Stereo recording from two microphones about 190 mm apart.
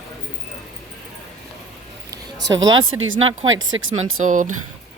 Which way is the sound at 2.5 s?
90° right.